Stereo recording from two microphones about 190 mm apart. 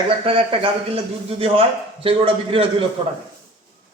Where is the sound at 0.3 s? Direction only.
30° right (ahead or behind).